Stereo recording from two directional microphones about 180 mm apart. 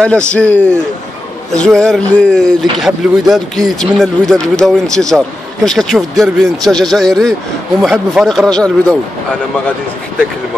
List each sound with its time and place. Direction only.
0.0 s a man's voice: 5° left (ahead or behind)